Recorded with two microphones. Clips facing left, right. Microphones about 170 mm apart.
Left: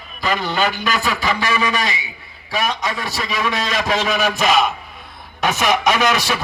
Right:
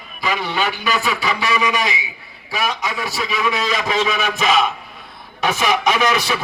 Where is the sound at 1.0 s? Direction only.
5° right (ahead or behind).